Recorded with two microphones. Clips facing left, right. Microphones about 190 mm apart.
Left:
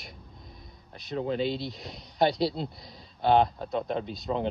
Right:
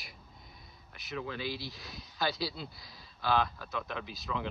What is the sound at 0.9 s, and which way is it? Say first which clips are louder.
Speech: left 9 dB; 30° left (ahead or behind).